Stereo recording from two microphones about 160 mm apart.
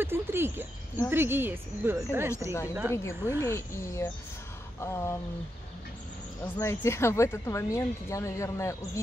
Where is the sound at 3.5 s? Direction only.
15° left (ahead or behind).